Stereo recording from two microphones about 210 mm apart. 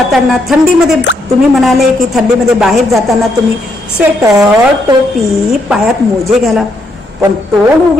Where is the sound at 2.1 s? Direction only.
Centre (ahead or behind).